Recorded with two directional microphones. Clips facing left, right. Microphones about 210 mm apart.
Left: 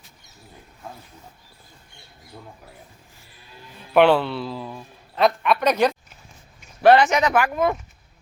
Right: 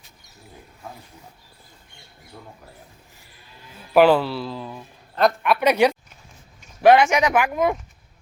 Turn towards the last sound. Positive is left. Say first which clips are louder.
# even
turn(degrees=-15)  # may be behind; listen again after turning